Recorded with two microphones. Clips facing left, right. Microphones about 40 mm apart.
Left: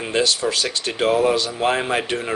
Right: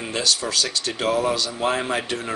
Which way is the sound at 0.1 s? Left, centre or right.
Left.